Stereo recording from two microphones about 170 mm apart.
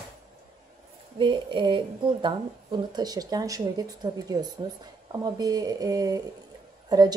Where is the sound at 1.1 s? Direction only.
30° right (ahead or behind).